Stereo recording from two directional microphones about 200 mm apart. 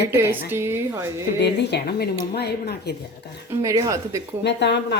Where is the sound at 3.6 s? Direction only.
15° right (ahead or behind).